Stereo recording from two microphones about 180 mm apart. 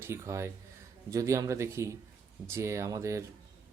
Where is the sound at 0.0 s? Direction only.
15° right (ahead or behind).